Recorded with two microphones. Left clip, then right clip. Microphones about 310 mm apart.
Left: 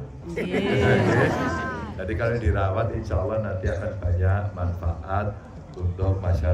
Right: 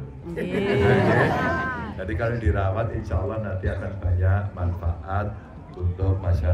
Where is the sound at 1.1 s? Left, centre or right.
Right.